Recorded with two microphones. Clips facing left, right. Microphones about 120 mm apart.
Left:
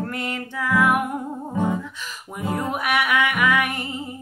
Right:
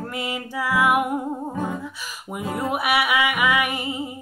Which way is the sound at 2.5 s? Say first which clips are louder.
Right 1 dB; 10° right (ahead or behind).